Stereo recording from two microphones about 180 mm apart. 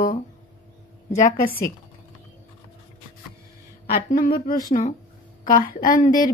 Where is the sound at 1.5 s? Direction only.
15° left (ahead or behind).